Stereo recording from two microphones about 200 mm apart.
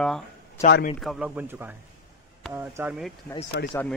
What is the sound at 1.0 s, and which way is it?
Speech, centre (ahead or behind).